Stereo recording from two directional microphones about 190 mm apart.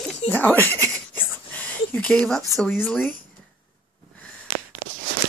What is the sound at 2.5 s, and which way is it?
Speech, 10° left (ahead or behind).